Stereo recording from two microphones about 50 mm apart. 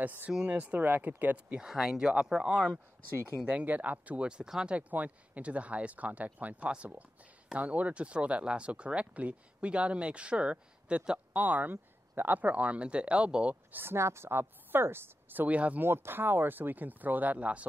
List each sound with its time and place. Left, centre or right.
0.0 s speech: right
1.6 s speech: centre
3.6 s speech: right
4.3 s speech: centre
4.7 s speech: right
12.4 s speech: right
13.7 s speech: right
13.9 s speech: right
15.8 s speech: right